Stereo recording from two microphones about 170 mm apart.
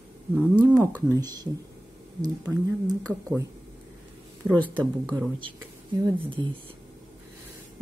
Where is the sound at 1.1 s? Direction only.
25° right (ahead or behind).